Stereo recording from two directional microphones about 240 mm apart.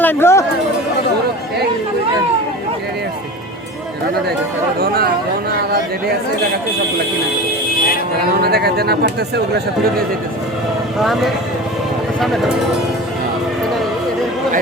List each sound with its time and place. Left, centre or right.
0.0 s a sound: centre
5.5 s speech: right
8.4 s speech: right
12.2 s speech: centre